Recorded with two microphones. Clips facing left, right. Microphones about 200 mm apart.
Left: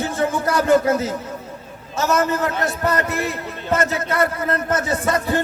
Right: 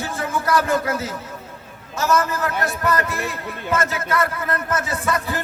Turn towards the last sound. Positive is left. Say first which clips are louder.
# left 4 dB
turn(degrees=30)  # may be behind; listen again after turning